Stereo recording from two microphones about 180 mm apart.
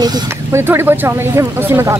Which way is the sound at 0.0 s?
20° right (ahead or behind).